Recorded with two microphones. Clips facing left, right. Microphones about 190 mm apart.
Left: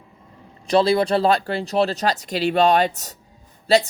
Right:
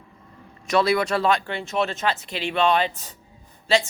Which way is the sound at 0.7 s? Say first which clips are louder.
Left 4 dB; 30° left (ahead or behind).